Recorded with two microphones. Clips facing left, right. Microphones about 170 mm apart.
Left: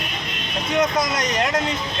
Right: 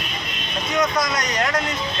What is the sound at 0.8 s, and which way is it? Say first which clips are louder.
Speech: left 1 dB; 25° left (ahead or behind).